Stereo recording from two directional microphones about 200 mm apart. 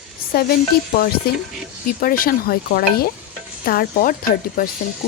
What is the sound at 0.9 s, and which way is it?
Speech, 45° left (ahead or behind).